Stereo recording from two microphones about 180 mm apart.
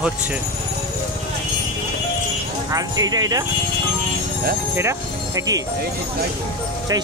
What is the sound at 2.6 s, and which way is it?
Speech, 20° right (ahead or behind).